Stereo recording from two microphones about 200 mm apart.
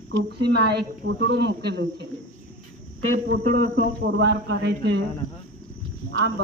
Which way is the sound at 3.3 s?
45° right (ahead or behind).